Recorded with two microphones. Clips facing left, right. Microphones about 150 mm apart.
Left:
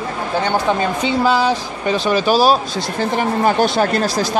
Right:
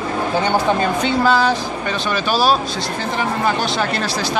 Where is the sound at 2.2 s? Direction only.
40° left (ahead or behind).